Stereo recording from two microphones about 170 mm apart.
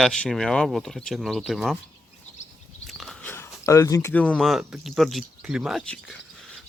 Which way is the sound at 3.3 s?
15° left (ahead or behind).